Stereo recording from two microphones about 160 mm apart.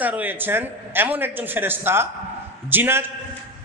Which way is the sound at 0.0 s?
10° right (ahead or behind).